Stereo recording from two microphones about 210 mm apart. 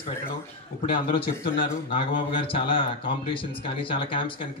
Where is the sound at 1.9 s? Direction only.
25° left (ahead or behind).